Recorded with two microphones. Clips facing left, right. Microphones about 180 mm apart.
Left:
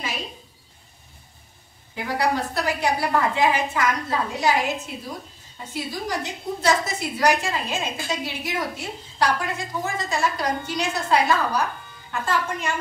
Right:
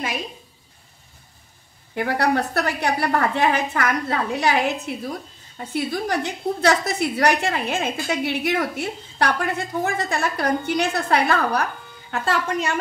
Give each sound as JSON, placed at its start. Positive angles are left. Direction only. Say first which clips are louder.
{"t": 2.0, "sound": "a woman's voice", "louder": "right 3 dB", "side_deg": -60}